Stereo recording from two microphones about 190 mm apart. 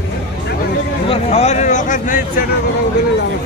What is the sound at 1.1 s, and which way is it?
Speech, 35° left (ahead or behind).